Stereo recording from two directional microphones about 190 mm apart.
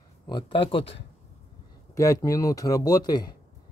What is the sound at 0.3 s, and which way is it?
Speech, 25° left (ahead or behind).